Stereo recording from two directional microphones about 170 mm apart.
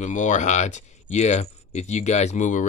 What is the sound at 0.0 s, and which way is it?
Speech, 45° left (ahead or behind).